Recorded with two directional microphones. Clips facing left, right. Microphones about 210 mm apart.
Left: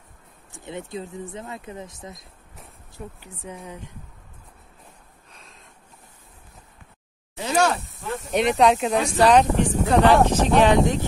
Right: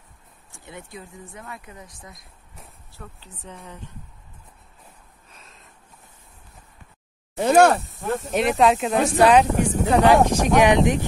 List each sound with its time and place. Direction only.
0.5 s speech: 20° left (ahead or behind)
3.0 s speech: 10° left (ahead or behind)
5.3 s a sound: centre (ahead or behind)
7.3 s speech: 55° right (ahead or behind)
8.3 s speech: centre (ahead or behind)